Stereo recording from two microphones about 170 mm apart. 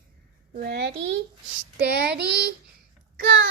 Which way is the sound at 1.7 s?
70° right (ahead or behind).